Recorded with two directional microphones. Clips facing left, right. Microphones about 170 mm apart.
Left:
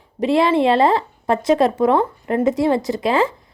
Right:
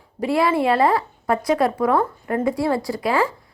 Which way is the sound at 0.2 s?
25° left (ahead or behind).